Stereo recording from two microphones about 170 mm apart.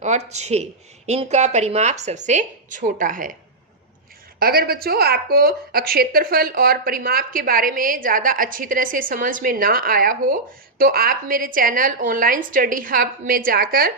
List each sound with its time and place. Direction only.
0.0 s speech: 40° right (ahead or behind)
4.4 s a woman's voice: 60° right (ahead or behind)